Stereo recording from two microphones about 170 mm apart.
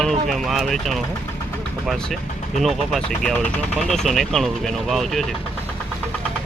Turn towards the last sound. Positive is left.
turn(degrees=0)  # may be behind; listen again after turning